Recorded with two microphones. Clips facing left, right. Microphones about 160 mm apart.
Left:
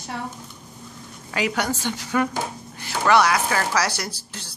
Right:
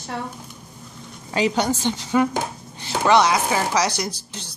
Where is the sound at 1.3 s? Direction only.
25° right (ahead or behind).